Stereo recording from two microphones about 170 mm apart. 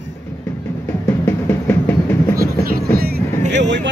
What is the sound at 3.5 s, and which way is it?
Speech, 90° right.